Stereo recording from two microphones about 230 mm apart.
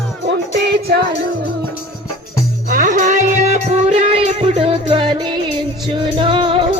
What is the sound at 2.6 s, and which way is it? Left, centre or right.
Music, right.